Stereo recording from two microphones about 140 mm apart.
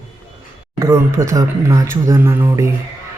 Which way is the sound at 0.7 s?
20° right (ahead or behind).